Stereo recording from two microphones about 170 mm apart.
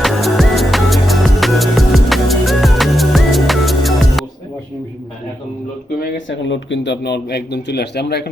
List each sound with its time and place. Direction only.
0.0 s music: centre (ahead or behind)
6.0 s speech: 90° left; by 8.3 s 75° left (ahead or behind)